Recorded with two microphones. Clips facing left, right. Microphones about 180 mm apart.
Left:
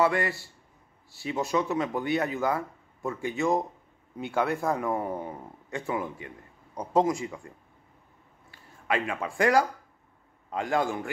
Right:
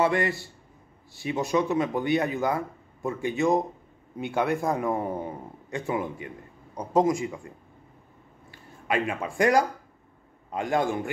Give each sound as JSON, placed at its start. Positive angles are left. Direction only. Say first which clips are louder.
{"t": 0.0, "sound": "a man's voice", "louder": "right 1 dB", "side_deg": -20}